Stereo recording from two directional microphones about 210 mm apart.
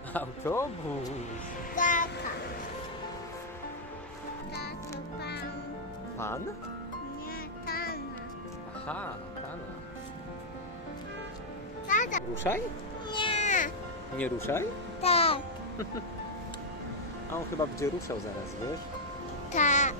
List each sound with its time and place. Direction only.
0.1 s speech: 10° left (ahead or behind)
1.8 s child singing: 40° left (ahead or behind)
6.1 s speech: 10° left (ahead or behind)
7.6 s music: 45° left (ahead or behind)
11.9 s music: 35° left (ahead or behind)
13.1 s a sound: 25° left (ahead or behind)
14.1 s speech: 10° left (ahead or behind)
15.0 s music: 30° left (ahead or behind)
17.3 s speech: 15° left (ahead or behind)
19.5 s music: 35° left (ahead or behind)